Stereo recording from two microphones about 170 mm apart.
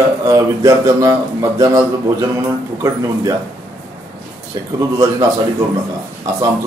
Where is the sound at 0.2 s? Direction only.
20° right (ahead or behind).